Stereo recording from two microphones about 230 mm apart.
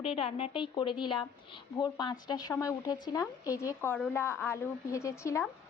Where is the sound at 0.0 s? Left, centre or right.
Left.